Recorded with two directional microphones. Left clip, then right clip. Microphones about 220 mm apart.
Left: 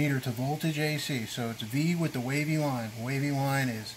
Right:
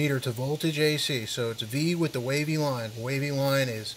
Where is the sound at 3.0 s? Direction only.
55° right (ahead or behind).